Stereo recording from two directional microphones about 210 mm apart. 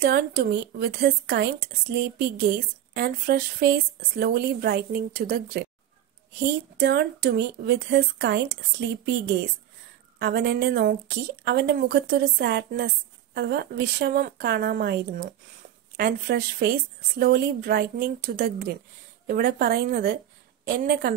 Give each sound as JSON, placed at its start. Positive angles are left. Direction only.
{"t": 0.0, "sound": "a woman's voice", "side_deg": -50}
{"t": 6.8, "sound": "a woman's voice", "side_deg": -50}